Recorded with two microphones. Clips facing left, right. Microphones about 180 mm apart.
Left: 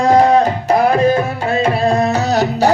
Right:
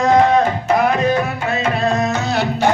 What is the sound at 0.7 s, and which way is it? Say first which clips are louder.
Music: left 3 dB; 35° left (ahead or behind).